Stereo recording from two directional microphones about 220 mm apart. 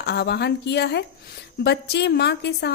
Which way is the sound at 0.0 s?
50° left (ahead or behind).